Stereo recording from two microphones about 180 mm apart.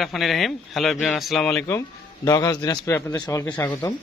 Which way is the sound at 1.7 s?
15° left (ahead or behind).